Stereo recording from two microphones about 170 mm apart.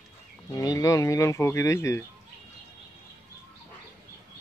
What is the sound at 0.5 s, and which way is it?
Speech, 20° left (ahead or behind).